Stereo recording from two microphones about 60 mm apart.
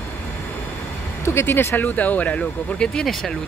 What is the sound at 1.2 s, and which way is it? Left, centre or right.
Speech, left.